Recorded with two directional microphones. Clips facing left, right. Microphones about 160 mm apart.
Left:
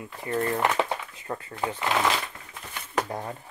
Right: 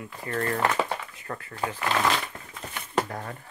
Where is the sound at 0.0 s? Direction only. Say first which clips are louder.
Left 2 dB; 20° left (ahead or behind).